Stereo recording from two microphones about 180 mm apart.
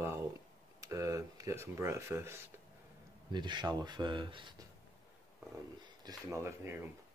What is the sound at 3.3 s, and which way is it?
Speech, 25° right (ahead or behind).